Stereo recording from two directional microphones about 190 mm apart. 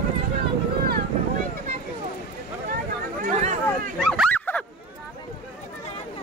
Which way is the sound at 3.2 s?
40° right (ahead or behind).